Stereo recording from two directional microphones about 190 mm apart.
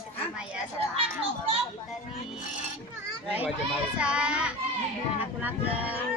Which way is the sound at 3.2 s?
5° right (ahead or behind).